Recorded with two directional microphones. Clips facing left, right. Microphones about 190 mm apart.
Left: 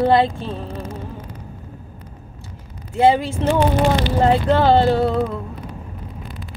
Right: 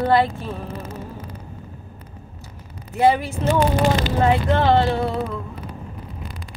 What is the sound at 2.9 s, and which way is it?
Speech, 30° left (ahead or behind).